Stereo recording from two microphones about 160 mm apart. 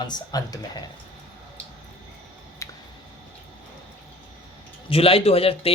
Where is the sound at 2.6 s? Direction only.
20° left (ahead or behind).